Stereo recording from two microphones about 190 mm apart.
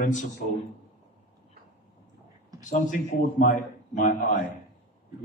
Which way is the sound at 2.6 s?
40° left (ahead or behind).